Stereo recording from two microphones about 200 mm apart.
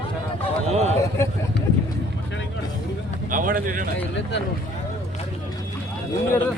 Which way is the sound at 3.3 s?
45° right (ahead or behind).